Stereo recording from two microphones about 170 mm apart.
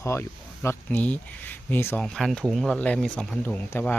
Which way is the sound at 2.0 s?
Centre (ahead or behind).